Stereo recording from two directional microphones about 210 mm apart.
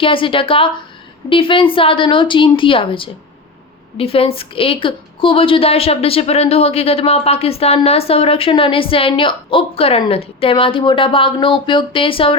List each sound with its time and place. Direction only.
0.0 s a woman's voice: 25° left (ahead or behind)